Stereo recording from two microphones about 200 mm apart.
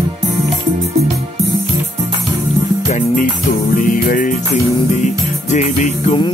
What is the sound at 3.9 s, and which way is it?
Music, 45° left (ahead or behind).